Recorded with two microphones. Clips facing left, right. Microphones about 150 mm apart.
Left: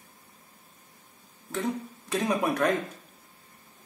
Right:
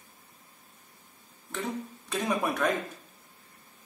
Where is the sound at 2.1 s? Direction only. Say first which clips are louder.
Left 3 dB; 15° left (ahead or behind).